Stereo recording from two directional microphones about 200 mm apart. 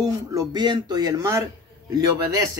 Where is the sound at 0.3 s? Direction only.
20° right (ahead or behind).